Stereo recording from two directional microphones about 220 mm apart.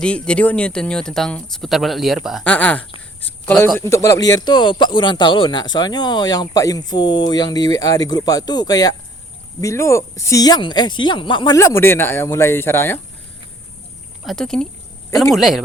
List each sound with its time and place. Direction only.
0.0 s speech: 5° left (ahead or behind)
14.3 s speech: 5° left (ahead or behind)